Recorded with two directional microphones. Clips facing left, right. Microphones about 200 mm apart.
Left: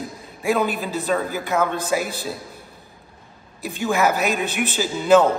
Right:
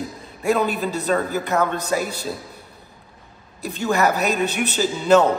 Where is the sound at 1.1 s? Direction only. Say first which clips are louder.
Even; centre (ahead or behind).